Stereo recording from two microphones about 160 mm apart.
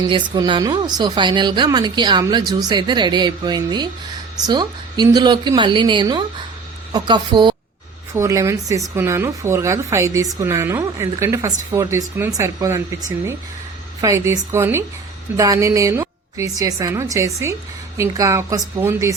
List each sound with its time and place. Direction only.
0.1 s a woman's voice: 30° right (ahead or behind)
8.1 s a woman's voice: 20° right (ahead or behind)